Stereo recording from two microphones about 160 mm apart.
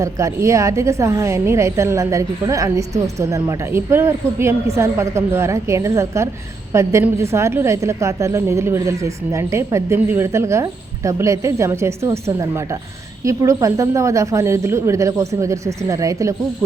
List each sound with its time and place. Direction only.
0.0 s a woman's voice: 20° right (ahead or behind)